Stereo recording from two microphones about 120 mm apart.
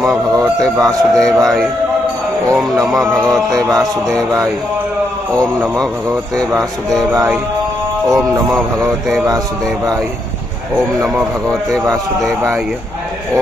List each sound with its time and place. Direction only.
0.3 s a man's voice: 30° right (ahead or behind)
0.7 s music: centre (ahead or behind)
8.1 s music: centre (ahead or behind)